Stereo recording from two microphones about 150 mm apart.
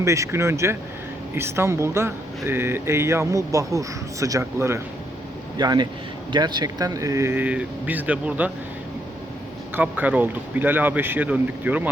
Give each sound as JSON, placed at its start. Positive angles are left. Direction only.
{"t": 0.0, "sound": "speech", "side_deg": -20}
{"t": 5.5, "sound": "speech", "side_deg": -30}
{"t": 9.7, "sound": "speech", "side_deg": -10}